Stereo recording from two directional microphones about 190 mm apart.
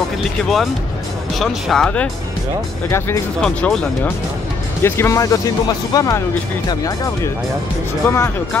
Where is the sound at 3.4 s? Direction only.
5° left (ahead or behind).